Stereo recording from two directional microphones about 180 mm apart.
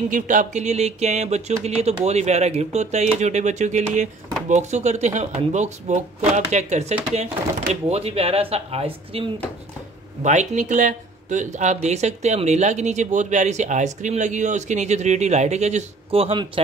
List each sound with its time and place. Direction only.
0.1 s speech: 45° right (ahead or behind)
10.2 s speech: 40° right (ahead or behind)